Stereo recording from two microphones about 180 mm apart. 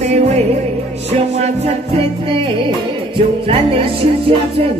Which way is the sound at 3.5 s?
30° right (ahead or behind).